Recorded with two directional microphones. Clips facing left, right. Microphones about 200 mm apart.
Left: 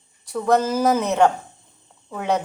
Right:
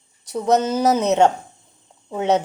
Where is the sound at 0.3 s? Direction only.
20° right (ahead or behind).